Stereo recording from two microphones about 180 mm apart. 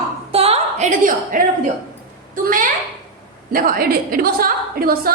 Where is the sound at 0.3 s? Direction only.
35° right (ahead or behind).